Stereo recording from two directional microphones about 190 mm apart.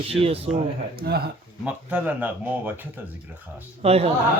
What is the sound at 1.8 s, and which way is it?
Speech, 5° right (ahead or behind).